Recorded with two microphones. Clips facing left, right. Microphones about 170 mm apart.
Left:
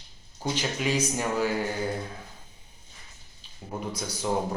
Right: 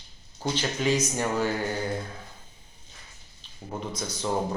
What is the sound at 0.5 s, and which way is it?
Speech, 10° left (ahead or behind).